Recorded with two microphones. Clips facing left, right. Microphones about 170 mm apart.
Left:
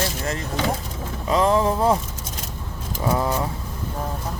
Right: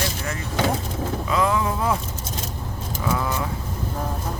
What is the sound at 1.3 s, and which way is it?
Speech, 35° left (ahead or behind).